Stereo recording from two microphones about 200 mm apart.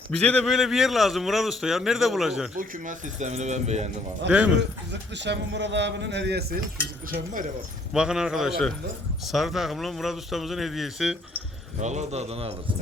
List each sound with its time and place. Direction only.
0.2 s a man's voice: 5° left (ahead or behind)
2.6 s speech: 40° right (ahead or behind)
4.3 s speech: 5° right (ahead or behind)
4.9 s a man's voice: 60° right (ahead or behind)
7.1 s speech: 40° right (ahead or behind)
7.9 s a man's voice: 5° right (ahead or behind)
11.8 s speech: 35° right (ahead or behind)